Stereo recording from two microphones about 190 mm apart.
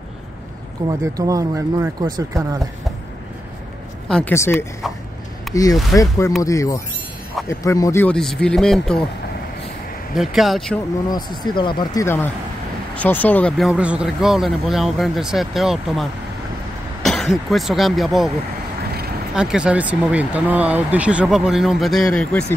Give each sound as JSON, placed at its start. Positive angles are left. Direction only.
{"t": 0.8, "sound": "speech", "side_deg": -20}
{"t": 4.1, "sound": "speech", "side_deg": 10}
{"t": 10.1, "sound": "speech", "side_deg": 0}
{"t": 11.1, "sound": "speech", "side_deg": 20}
{"t": 19.3, "sound": "speech", "side_deg": -5}